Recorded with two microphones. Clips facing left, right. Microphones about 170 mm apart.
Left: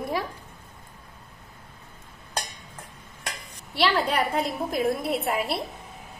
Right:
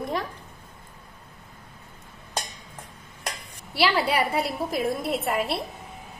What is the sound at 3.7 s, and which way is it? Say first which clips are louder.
A woman's voice: right 1 dB; 10° right (ahead or behind).